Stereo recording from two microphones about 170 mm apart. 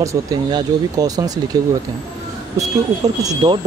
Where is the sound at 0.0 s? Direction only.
20° right (ahead or behind).